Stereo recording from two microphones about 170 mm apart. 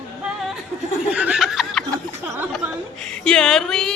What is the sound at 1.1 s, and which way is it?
Snicker, 5° right (ahead or behind).